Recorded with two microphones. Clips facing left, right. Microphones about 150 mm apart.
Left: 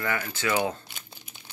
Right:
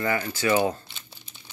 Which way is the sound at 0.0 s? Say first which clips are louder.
Right 4 dB; 15° right (ahead or behind).